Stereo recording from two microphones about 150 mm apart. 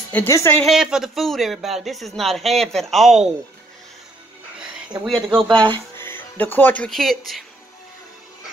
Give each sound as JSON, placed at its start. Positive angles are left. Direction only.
{"t": 0.1, "sound": "speech", "side_deg": 15}
{"t": 0.7, "sound": "speech", "side_deg": -5}
{"t": 5.0, "sound": "speech", "side_deg": 0}
{"t": 5.5, "sound": "speech", "side_deg": -30}
{"t": 5.9, "sound": "speech", "side_deg": 15}